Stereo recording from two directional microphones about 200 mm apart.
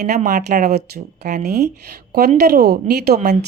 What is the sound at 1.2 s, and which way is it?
Speech, 35° right (ahead or behind).